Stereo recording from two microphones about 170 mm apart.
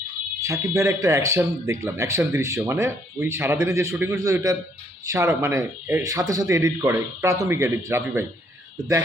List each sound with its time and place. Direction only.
0.4 s speech: 15° right (ahead or behind)